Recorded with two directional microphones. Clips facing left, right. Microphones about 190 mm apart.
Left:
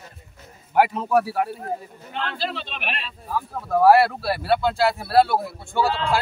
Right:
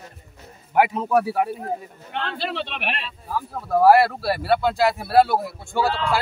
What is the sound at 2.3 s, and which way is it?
Speech, 70° right (ahead or behind).